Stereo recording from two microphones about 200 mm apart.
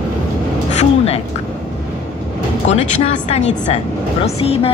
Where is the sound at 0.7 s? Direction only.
30° left (ahead or behind).